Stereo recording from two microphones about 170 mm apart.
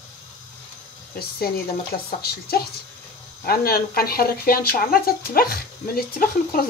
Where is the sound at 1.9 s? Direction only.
35° left (ahead or behind).